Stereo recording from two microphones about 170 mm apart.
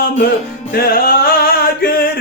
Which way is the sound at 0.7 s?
60° left (ahead or behind).